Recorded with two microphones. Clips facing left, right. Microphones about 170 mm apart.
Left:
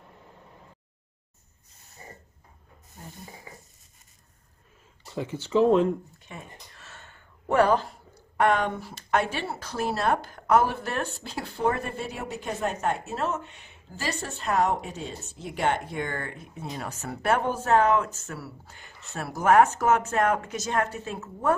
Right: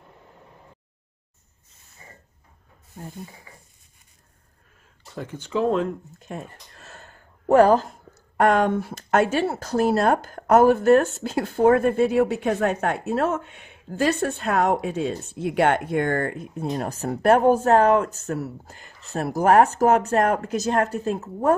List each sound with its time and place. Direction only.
5.1 s speech: 10° left (ahead or behind)
6.1 s speech: 40° right (ahead or behind)
6.7 s a sound: 40° right (ahead or behind)
9.9 s speech: 45° right (ahead or behind)